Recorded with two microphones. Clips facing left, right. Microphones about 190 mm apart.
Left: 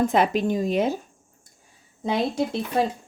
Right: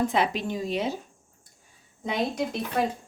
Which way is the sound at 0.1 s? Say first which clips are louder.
Left 5 dB; 45° left (ahead or behind).